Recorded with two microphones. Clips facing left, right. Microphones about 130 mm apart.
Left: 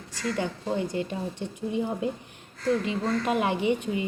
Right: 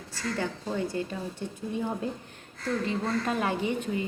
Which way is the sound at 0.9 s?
20° left (ahead or behind).